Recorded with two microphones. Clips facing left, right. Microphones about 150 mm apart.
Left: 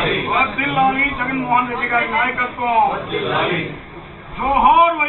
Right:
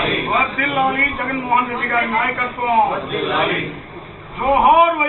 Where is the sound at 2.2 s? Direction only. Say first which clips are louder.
Even; centre (ahead or behind).